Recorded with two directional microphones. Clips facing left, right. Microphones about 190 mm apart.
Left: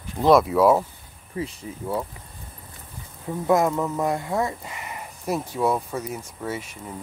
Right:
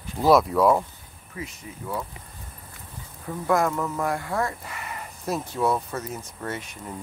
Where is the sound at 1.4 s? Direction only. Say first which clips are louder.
Left 6 dB; 30° left (ahead or behind).